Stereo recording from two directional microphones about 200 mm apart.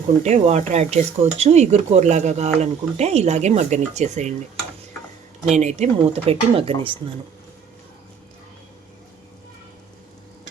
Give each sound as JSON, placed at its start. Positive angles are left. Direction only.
{"t": 0.2, "sound": "speech", "side_deg": -35}
{"t": 5.5, "sound": "speech", "side_deg": -35}